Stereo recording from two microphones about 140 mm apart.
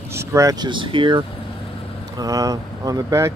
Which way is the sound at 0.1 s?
20° right (ahead or behind).